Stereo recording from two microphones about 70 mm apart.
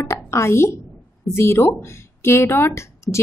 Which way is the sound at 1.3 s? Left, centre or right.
Left.